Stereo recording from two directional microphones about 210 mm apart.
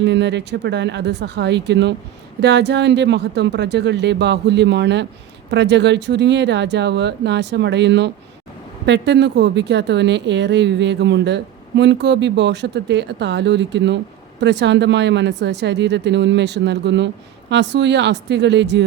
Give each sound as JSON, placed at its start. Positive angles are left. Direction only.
{"t": 0.0, "sound": "speech", "side_deg": -55}